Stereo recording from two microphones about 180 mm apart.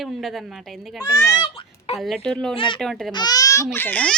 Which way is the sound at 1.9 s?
Centre (ahead or behind).